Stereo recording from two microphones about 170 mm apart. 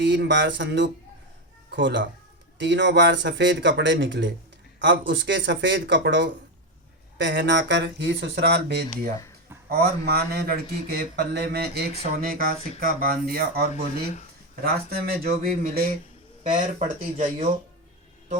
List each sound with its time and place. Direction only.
0.0 s speech: 90° right
9.6 s speech: 65° right (ahead or behind)
12.0 s speech: 55° right (ahead or behind)
16.4 s speech: 45° right (ahead or behind)